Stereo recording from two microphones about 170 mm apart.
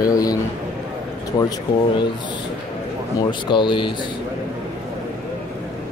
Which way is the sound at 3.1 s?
25° left (ahead or behind).